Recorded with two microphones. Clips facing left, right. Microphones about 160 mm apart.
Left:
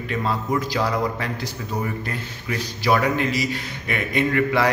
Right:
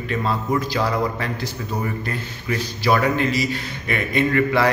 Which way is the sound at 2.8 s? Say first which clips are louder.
Right 1 dB; 10° left (ahead or behind).